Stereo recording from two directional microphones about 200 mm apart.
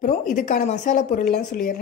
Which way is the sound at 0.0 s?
45° left (ahead or behind).